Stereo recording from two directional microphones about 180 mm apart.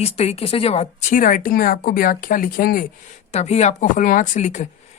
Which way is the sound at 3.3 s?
40° left (ahead or behind).